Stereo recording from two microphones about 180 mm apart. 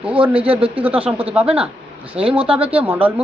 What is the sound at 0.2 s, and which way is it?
Speech, 30° right (ahead or behind).